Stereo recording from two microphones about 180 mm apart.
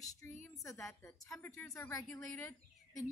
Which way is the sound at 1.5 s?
15° left (ahead or behind).